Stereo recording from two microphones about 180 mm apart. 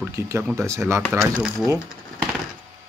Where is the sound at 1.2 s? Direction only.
Centre (ahead or behind).